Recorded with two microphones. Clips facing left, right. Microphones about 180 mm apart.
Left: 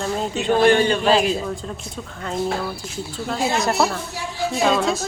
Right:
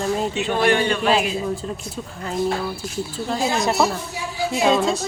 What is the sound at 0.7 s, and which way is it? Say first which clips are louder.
Speech: left 2 dB; 30° left (ahead or behind).